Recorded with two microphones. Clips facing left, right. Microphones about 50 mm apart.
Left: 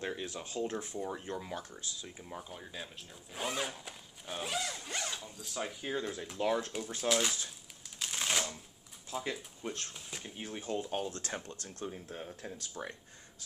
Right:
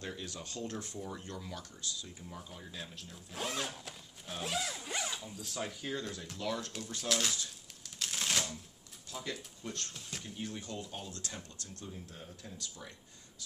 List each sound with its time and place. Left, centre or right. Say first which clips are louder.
0.0 s speech: left 4 dB; left
3.1 s zipper: left 1 dB; centre
5.2 s speech: left 1 dB; centre
6.4 s speech: left 6 dB; left
6.7 s speech: left 4 dB; centre
7.8 s a sound: left 1 dB; centre
9.1 s speech: left 4 dB; left
12.8 s speech: left 8 dB; left